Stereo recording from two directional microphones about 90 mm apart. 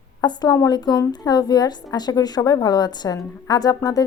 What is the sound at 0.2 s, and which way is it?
A woman's voice, 45° left (ahead or behind).